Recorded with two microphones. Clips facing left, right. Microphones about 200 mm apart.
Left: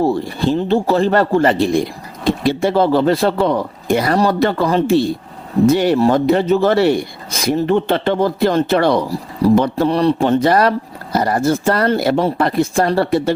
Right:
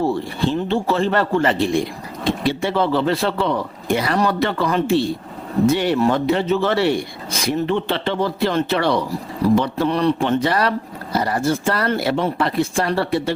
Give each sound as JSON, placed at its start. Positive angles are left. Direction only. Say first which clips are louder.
{"t": 0.0, "sound": "speech", "louder": "left 4 dB", "side_deg": 40}